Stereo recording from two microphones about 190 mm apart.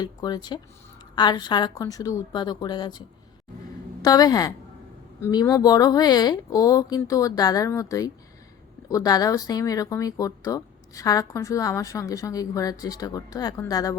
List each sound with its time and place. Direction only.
0.0 s speech: 20° left (ahead or behind)
4.0 s speech: 20° left (ahead or behind)